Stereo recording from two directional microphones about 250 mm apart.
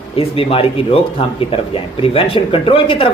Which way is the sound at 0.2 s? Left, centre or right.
Left.